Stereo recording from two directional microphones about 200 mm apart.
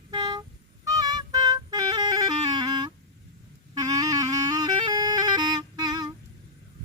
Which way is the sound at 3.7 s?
20° right (ahead or behind).